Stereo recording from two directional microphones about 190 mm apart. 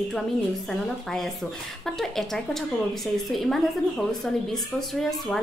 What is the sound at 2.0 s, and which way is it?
Speech, centre (ahead or behind).